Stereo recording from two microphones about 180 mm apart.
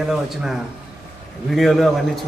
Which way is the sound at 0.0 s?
Centre (ahead or behind).